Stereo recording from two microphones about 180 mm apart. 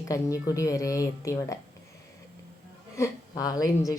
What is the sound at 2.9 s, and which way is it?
Speech, 20° left (ahead or behind).